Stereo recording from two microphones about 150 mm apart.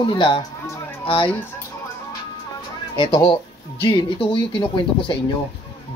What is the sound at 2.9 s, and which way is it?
Speech, 30° left (ahead or behind).